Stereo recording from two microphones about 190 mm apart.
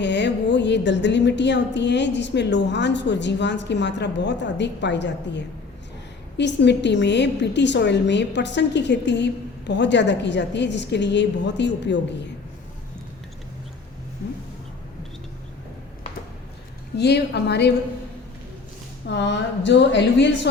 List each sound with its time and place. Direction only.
0.0 s a woman's voice: 65° left (ahead or behind)
17.0 s a woman's voice: 60° left (ahead or behind)
19.0 s a woman's voice: 65° left (ahead or behind)